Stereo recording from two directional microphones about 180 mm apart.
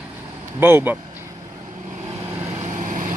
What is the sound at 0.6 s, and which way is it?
Speech, 10° right (ahead or behind).